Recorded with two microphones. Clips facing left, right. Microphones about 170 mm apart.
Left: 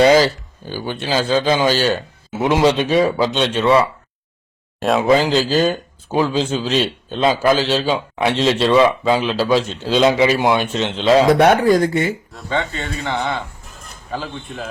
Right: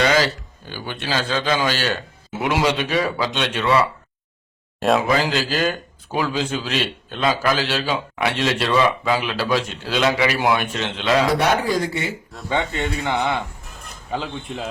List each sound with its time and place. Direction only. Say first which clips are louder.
0.0 s speech: left 7 dB; 30° left (ahead or behind)
5.0 s speech: left 6 dB; 30° left (ahead or behind)
11.3 s speech: left 7 dB; 55° left (ahead or behind)
12.5 s speech: even; 15° right (ahead or behind)